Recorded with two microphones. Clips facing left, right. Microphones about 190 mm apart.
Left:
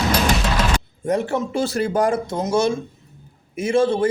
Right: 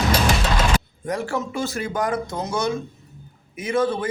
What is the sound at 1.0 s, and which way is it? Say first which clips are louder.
Speech: left 7 dB; 25° left (ahead or behind).